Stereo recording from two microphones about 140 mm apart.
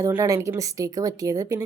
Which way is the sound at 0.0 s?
20° right (ahead or behind).